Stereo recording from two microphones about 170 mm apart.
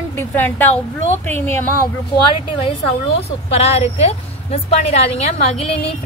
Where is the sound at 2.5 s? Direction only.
30° left (ahead or behind).